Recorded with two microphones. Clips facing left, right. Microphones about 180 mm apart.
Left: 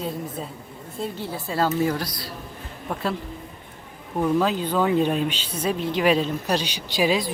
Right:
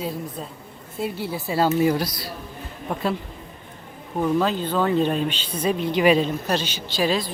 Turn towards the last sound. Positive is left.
turn(degrees=5)  # may be behind; listen again after turning